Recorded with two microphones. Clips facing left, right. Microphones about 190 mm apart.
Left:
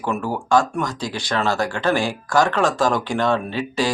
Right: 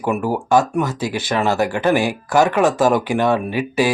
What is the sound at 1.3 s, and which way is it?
A man's voice, 15° right (ahead or behind).